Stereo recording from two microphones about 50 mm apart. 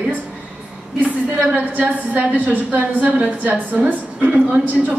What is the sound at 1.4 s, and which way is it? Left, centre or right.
A woman's voice, right.